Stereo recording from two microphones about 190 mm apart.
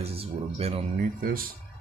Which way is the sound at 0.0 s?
30° right (ahead or behind).